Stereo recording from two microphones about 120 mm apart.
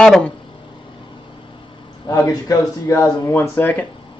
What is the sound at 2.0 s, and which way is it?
Speech, 30° left (ahead or behind).